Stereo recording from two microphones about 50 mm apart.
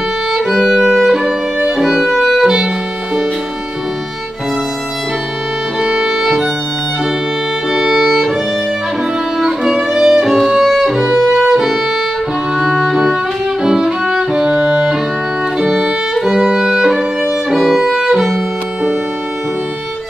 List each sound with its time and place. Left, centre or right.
0.3 s violin: centre
2.4 s violin: centre
5.8 s music: centre
7.7 s violin: centre
9.4 s music: centre
15.6 s music: centre
16.2 s violin: centre